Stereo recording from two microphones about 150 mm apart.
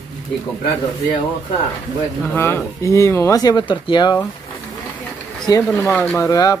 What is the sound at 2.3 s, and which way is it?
Speech, 15° left (ahead or behind).